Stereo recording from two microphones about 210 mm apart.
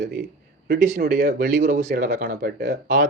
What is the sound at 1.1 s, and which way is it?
Speech, 50° right (ahead or behind).